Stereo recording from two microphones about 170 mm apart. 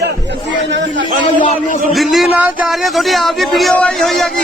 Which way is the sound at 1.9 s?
Centre (ahead or behind).